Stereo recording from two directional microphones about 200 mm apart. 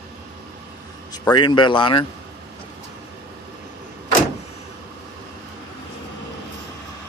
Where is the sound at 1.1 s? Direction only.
20° left (ahead or behind).